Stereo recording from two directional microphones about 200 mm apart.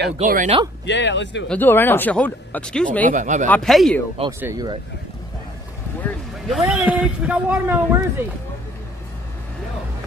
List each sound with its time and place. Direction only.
0.2 s speech: 40° right (ahead or behind)
0.8 s a man's voice: 60° left (ahead or behind)
1.5 s speech: 10° left (ahead or behind)
3.1 s speech: 40° right (ahead or behind)
3.4 s speech: 5° left (ahead or behind)
4.3 s speech: 15° right (ahead or behind)
6.0 s speech: centre (ahead or behind)